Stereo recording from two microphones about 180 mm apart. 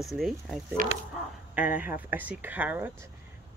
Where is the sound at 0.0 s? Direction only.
Centre (ahead or behind).